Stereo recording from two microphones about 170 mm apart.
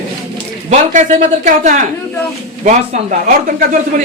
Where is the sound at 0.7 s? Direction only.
45° right (ahead or behind).